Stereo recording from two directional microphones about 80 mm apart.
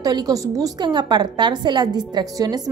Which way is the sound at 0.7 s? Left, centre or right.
Right.